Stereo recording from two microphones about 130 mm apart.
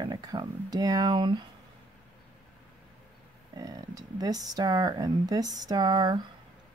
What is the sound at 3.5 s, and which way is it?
Speech, 30° right (ahead or behind).